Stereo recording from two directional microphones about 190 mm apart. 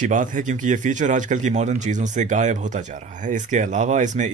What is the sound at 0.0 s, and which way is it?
Speech, 45° right (ahead or behind).